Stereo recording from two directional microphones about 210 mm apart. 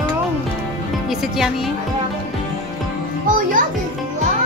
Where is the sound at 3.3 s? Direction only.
40° right (ahead or behind).